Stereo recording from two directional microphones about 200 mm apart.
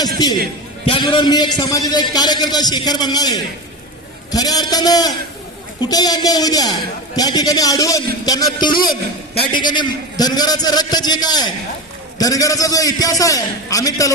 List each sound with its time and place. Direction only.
0.0 s a man's voice: 20° left (ahead or behind)